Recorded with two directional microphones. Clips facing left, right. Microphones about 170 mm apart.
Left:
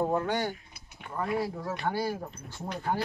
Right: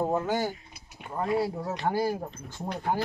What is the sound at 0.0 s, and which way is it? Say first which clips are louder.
Speech: right 1 dB; 10° right (ahead or behind).